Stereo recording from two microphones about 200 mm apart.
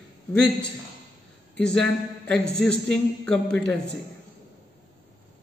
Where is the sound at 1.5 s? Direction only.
5° left (ahead or behind).